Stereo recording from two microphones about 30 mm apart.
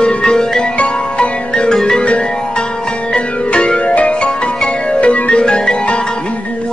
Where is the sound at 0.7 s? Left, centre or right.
Left.